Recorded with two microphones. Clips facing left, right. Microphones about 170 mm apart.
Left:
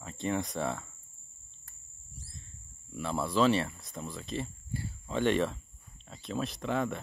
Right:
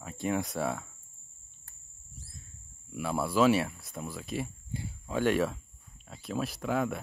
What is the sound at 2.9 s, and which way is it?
Speech, 10° right (ahead or behind).